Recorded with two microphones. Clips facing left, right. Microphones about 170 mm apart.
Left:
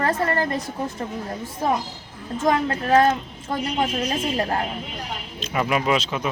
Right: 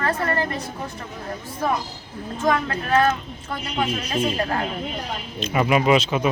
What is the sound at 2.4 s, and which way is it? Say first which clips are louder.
Speech: left 1 dB; 30° left (ahead or behind).